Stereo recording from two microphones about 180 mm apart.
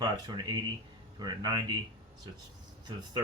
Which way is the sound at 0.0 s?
20° right (ahead or behind).